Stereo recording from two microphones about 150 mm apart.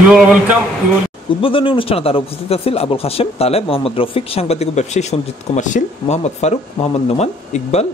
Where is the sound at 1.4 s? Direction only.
35° left (ahead or behind).